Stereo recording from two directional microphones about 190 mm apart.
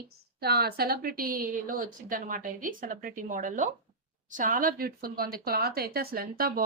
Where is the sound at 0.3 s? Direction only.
55° right (ahead or behind).